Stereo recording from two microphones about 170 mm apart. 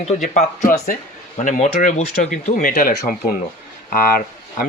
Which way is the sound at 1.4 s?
50° left (ahead or behind).